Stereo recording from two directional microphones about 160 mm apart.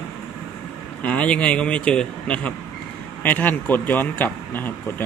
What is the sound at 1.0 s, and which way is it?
Speech, 10° left (ahead or behind).